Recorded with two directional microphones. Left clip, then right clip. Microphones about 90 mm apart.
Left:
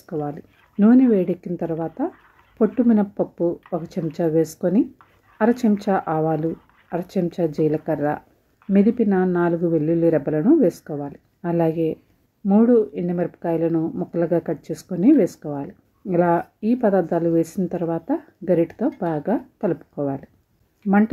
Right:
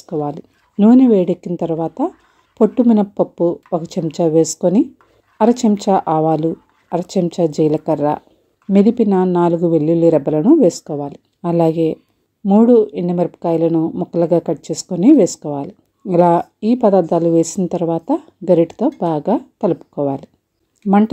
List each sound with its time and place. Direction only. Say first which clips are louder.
0.0 s speech: right 6 dB; 30° right (ahead or behind)
0.3 s speech: right 6 dB; 50° right (ahead or behind)
12.4 s speech: right 6 dB; 45° right (ahead or behind)
13.0 s speech: right 6 dB; 60° right (ahead or behind)
13.7 s speech: right 6 dB; 35° right (ahead or behind)
14.1 s speech: right 6 dB; 50° right (ahead or behind)